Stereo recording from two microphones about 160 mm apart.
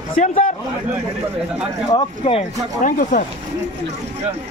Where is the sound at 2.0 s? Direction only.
35° left (ahead or behind).